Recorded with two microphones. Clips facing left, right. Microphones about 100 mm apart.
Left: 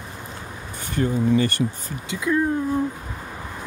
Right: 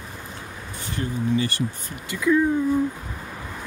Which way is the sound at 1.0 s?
45° left (ahead or behind).